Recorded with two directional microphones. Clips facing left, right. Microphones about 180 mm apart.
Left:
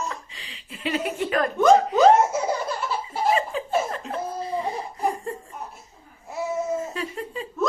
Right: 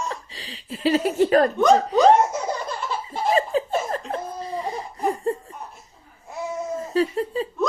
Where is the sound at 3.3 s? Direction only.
35° right (ahead or behind).